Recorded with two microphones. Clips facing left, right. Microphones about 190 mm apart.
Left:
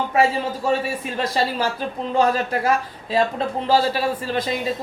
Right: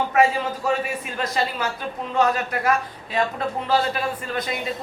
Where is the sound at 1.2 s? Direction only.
30° left (ahead or behind).